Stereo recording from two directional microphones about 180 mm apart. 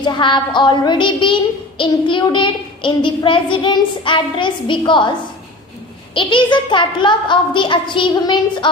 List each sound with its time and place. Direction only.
0.0 s a child's voice: 25° left (ahead or behind)
6.1 s a child's voice: 25° left (ahead or behind)